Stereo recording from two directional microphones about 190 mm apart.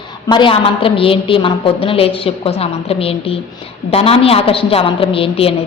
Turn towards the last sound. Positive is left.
turn(degrees=30)  # may be behind; listen again after turning